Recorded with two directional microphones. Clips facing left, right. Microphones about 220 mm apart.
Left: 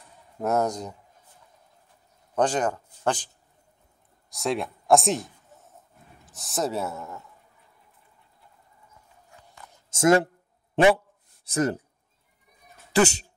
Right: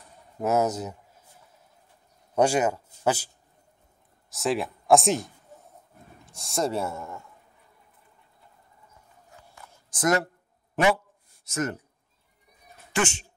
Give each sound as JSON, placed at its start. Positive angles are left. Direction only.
{"t": 0.4, "sound": "a man's voice", "side_deg": -5}
{"t": 2.3, "sound": "speech", "side_deg": -10}
{"t": 4.3, "sound": "a man's voice", "side_deg": 0}
{"t": 9.7, "sound": "a sound", "side_deg": 25}
{"t": 11.4, "sound": "speech", "side_deg": 35}
{"t": 12.9, "sound": "speech", "side_deg": 35}